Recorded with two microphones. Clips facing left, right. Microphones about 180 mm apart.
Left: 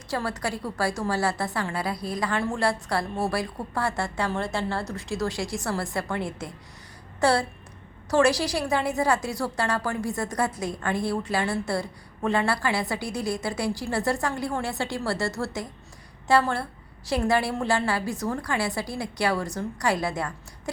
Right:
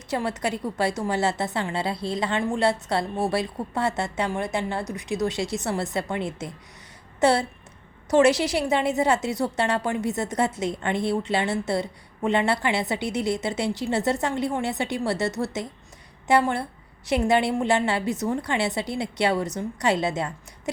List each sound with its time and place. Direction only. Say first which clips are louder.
0.1 s a woman's voice: right 3 dB; 20° right (ahead or behind)